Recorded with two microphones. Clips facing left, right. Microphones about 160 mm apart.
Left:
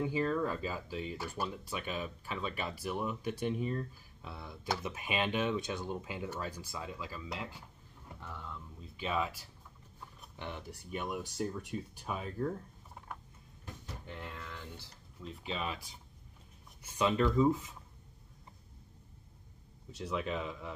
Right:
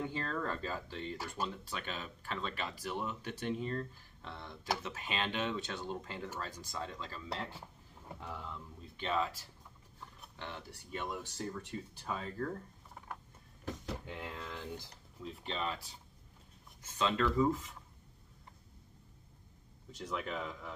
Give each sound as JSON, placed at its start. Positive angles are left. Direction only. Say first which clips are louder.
{"t": 0.0, "sound": "speech", "louder": "left 6 dB", "side_deg": 10}
{"t": 8.2, "sound": "speech", "louder": "right 1 dB", "side_deg": -15}
{"t": 8.9, "sound": "speech", "louder": "even", "side_deg": 10}
{"t": 14.0, "sound": "speech", "louder": "right 2 dB", "side_deg": -10}
{"t": 15.2, "sound": "speech", "louder": "even", "side_deg": 5}
{"t": 20.0, "sound": "speech", "louder": "left 3 dB", "side_deg": 10}